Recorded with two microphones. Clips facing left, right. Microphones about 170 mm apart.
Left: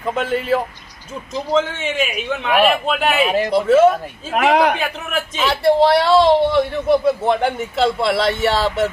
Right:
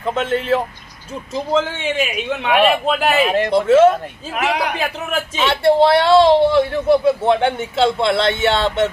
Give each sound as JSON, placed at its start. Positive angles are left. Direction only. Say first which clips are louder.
{"t": 0.0, "sound": "a man's voice", "louder": "right 1 dB", "side_deg": 5}